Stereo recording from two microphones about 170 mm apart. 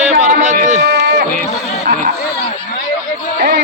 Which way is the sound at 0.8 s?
75° right (ahead or behind).